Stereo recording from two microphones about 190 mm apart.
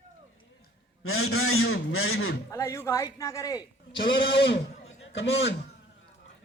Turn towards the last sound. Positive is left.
turn(degrees=70)  # may be behind; listen again after turning